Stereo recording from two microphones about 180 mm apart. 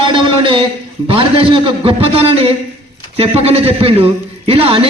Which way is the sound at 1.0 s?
30° right (ahead or behind).